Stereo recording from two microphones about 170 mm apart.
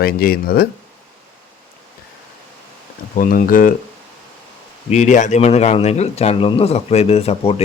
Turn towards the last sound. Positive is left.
turn(degrees=35)  # may be behind; listen again after turning